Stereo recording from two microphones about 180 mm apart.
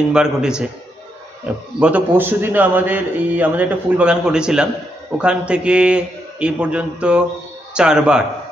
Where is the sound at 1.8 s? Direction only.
10° right (ahead or behind).